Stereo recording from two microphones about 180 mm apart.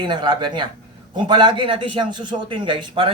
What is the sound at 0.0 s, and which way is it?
A man's voice, 25° right (ahead or behind).